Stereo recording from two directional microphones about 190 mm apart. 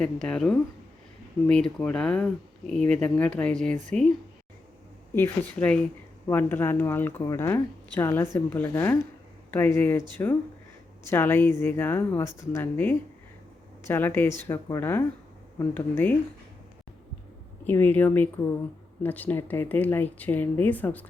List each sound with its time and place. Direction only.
0.0 s speech: 5° left (ahead or behind)
5.1 s speech: 10° left (ahead or behind)
17.7 s speech: 10° left (ahead or behind)